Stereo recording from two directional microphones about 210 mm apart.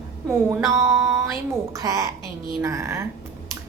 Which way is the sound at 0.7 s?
15° right (ahead or behind).